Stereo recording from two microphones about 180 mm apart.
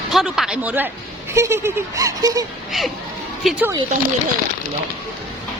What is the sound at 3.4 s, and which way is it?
Speech, centre (ahead or behind).